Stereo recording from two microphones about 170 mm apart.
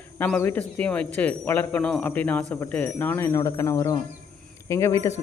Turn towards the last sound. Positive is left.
turn(degrees=15)  # may be behind; listen again after turning